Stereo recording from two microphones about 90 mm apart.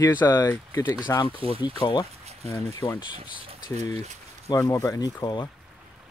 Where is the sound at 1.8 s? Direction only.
55° left (ahead or behind).